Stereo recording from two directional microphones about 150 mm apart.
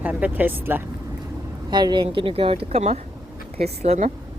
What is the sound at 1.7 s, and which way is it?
A woman's voice, 30° right (ahead or behind).